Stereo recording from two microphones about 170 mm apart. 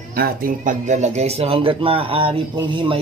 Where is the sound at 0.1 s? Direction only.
60° right (ahead or behind).